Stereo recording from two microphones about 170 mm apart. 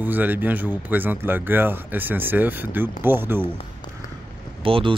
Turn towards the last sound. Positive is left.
turn(degrees=-30)  # may be behind; listen again after turning